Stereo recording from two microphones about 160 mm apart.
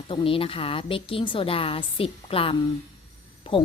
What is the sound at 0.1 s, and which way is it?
A woman's voice, 35° left (ahead or behind).